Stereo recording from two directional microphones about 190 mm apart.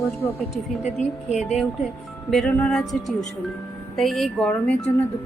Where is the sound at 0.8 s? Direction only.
35° left (ahead or behind).